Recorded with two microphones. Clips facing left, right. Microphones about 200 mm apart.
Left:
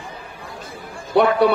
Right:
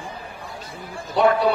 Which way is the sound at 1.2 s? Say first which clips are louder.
Left 2 dB; 60° left (ahead or behind).